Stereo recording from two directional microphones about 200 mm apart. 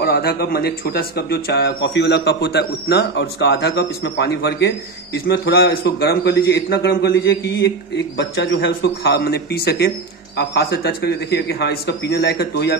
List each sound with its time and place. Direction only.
0.0 s speech: 50° left (ahead or behind)